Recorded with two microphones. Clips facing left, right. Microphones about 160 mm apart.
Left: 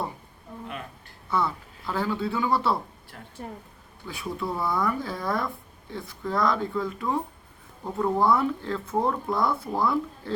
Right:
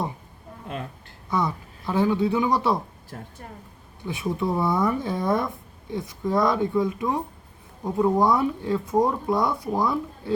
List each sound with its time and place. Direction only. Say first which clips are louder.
1.3 s speech: right 1 dB; 15° right (ahead or behind)
3.1 s speech: right 7 dB; 35° right (ahead or behind)
4.0 s speech: right 5 dB; 20° right (ahead or behind)